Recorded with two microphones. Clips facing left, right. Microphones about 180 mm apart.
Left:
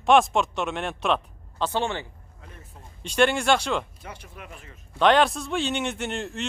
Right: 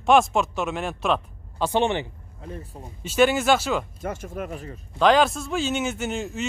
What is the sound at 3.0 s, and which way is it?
Speech, 5° right (ahead or behind).